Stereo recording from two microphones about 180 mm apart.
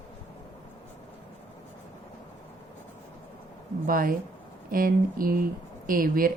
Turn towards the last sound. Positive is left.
turn(degrees=-50)  # may be behind; listen again after turning